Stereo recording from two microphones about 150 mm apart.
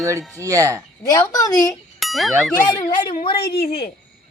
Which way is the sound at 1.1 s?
25° left (ahead or behind).